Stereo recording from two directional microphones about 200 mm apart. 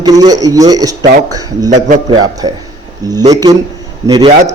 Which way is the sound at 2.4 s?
20° right (ahead or behind).